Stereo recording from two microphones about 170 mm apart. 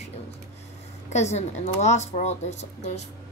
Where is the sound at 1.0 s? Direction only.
40° left (ahead or behind).